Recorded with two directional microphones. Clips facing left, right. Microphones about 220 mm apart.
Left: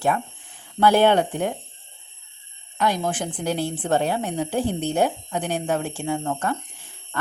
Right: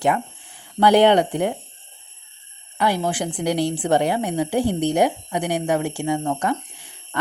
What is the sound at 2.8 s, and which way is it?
A woman's voice, 10° right (ahead or behind).